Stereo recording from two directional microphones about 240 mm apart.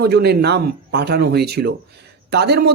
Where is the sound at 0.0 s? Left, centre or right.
Right.